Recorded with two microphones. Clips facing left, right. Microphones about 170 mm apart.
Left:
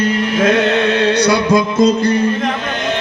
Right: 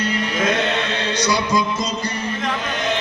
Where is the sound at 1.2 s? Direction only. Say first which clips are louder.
Left 7 dB; 60° left (ahead or behind).